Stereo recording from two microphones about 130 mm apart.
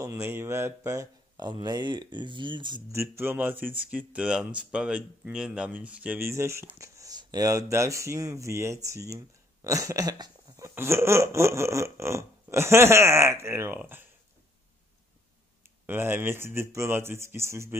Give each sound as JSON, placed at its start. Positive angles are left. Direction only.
{"t": 0.0, "sound": "speech", "side_deg": -20}
{"t": 2.9, "sound": "speech", "side_deg": -20}
{"t": 10.7, "sound": "speech", "side_deg": -20}
{"t": 15.9, "sound": "speech", "side_deg": -15}